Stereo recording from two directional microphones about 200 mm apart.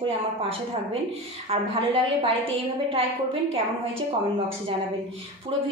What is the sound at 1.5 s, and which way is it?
Speech, 25° right (ahead or behind).